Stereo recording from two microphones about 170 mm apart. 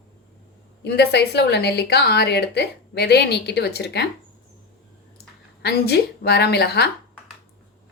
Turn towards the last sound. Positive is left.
turn(degrees=70)  # may be behind; listen again after turning